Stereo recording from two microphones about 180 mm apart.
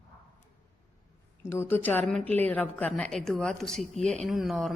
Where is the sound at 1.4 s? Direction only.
15° left (ahead or behind).